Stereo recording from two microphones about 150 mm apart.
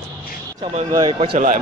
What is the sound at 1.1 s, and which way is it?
Speech, 40° right (ahead or behind).